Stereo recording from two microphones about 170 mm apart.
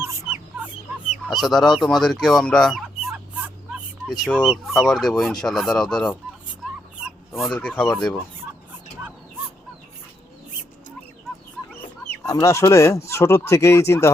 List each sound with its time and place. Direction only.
0.0 s chicken: 10° right (ahead or behind)
1.3 s speech: centre (ahead or behind)
2.0 s fowl: centre (ahead or behind)
4.2 s speech: centre (ahead or behind)
7.0 s fowl: centre (ahead or behind)
7.6 s speech: 5° left (ahead or behind)
11.7 s speech: 15° left (ahead or behind)